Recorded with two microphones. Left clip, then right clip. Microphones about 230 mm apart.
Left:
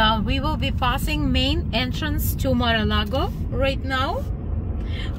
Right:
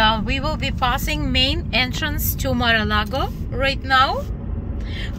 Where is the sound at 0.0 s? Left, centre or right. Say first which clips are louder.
Right 2 dB; centre.